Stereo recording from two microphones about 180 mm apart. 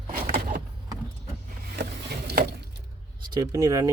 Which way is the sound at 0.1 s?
50° right (ahead or behind).